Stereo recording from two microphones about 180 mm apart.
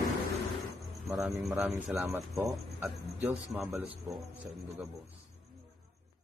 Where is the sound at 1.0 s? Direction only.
Centre (ahead or behind).